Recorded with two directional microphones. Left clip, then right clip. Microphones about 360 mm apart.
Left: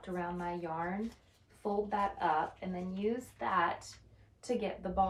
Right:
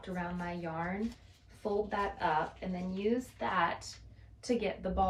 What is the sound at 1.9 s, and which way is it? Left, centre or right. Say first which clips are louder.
Speech: left 1 dB; centre.